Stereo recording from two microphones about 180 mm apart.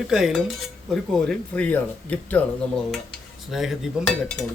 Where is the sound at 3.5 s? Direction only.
Centre (ahead or behind).